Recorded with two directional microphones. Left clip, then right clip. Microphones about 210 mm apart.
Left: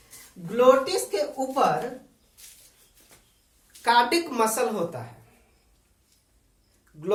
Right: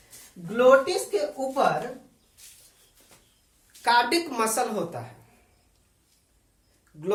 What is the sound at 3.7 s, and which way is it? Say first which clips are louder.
Speech: left 1 dB; 10° right (ahead or behind).